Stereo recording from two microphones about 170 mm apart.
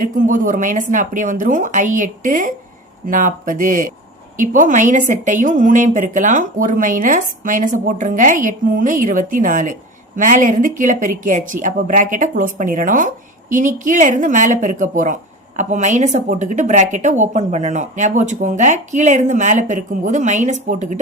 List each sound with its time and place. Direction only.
0.0 s a woman's voice: 50° right (ahead or behind)